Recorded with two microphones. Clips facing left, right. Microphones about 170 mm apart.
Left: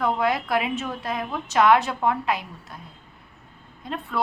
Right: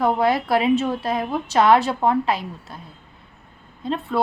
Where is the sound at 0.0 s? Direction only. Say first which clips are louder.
Right 4 dB; 30° right (ahead or behind).